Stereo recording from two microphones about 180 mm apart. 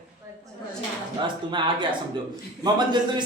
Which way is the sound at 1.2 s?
25° right (ahead or behind).